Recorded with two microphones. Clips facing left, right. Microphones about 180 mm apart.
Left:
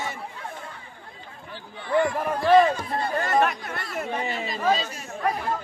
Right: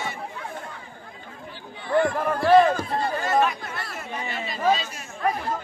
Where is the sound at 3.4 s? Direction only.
60° left (ahead or behind).